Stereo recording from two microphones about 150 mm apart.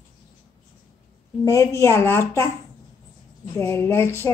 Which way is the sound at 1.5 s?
20° left (ahead or behind).